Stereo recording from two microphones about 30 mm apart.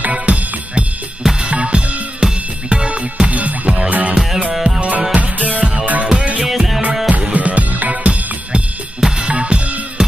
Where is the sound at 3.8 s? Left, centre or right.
Right.